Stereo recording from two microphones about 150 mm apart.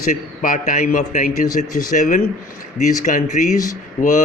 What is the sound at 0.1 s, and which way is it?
A man's voice, 55° left (ahead or behind).